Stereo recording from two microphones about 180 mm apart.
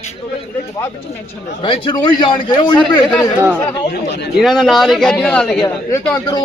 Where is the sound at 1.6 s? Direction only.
30° left (ahead or behind).